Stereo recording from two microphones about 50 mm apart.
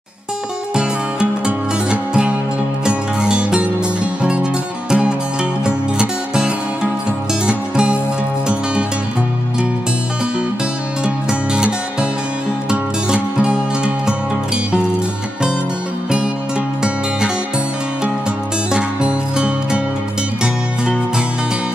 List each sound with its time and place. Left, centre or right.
1.4 s music: centre
11.2 s music: centre
18.7 s music: centre